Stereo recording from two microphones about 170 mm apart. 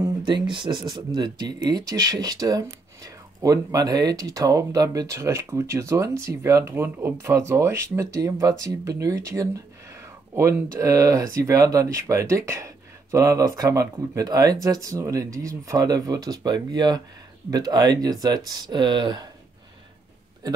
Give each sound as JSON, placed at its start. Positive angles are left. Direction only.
{"t": 0.0, "sound": "speech", "side_deg": -25}